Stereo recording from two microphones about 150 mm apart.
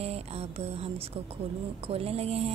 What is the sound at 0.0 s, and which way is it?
A woman's voice, 45° right (ahead or behind).